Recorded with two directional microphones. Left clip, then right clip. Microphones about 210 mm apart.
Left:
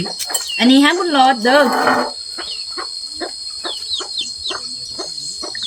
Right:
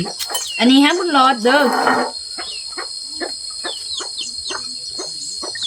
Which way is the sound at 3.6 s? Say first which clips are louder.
Left 3 dB; 5° right (ahead or behind).